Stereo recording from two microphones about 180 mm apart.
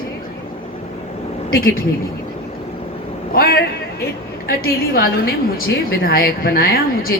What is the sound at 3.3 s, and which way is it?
A woman's voice, 60° left (ahead or behind).